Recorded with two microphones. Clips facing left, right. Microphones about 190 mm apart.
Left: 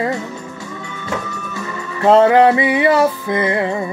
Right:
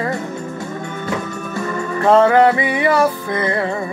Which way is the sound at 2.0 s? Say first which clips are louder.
Left 2 dB; 20° left (ahead or behind).